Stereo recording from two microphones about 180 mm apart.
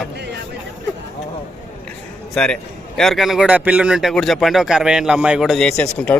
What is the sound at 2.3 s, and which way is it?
A man's voice, 5° left (ahead or behind).